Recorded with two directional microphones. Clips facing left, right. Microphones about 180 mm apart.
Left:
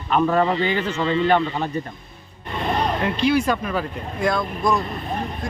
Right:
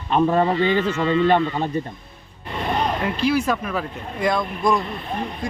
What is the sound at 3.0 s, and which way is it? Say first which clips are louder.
Speech: left 2 dB; centre (ahead or behind).